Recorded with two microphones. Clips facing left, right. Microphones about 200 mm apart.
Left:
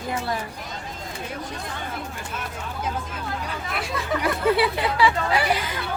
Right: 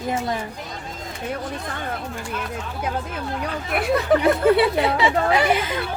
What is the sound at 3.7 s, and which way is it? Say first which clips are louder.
Speech: right 8 dB; 55° right (ahead or behind).